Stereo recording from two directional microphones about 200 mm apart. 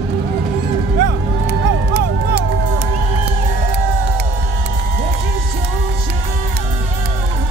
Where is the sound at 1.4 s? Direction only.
55° right (ahead or behind).